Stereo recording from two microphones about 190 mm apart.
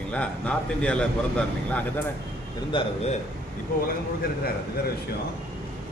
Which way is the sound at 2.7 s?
25° left (ahead or behind).